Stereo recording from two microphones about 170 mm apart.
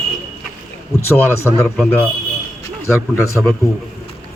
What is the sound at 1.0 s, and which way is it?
Speech, 15° left (ahead or behind).